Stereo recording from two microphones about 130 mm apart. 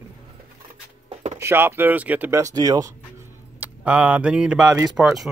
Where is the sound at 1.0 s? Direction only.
65° right (ahead or behind).